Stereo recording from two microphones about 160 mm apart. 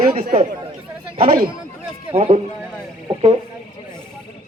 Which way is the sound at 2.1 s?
45° right (ahead or behind).